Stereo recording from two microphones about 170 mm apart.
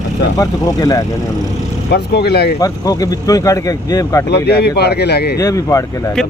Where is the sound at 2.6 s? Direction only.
20° left (ahead or behind).